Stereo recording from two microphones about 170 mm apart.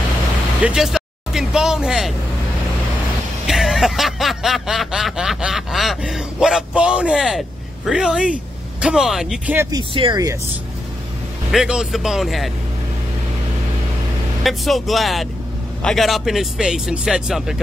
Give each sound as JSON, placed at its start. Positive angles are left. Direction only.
{"t": 0.6, "sound": "speech", "side_deg": -5}
{"t": 3.4, "sound": "a sound", "side_deg": 0}
{"t": 8.8, "sound": "speech", "side_deg": -5}
{"t": 9.6, "sound": "speech", "side_deg": -20}
{"t": 11.5, "sound": "speech", "side_deg": -5}
{"t": 14.4, "sound": "speech", "side_deg": 0}